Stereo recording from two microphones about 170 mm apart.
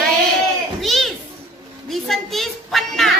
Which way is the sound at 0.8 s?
Centre (ahead or behind).